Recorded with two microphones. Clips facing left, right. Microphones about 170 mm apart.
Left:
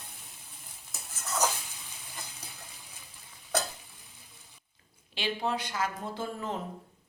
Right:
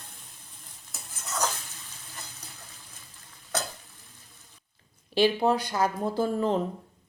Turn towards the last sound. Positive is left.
turn(degrees=-35)  # may be behind; listen again after turning